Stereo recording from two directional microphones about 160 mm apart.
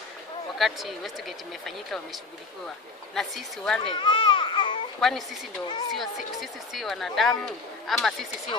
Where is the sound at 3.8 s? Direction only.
30° left (ahead or behind).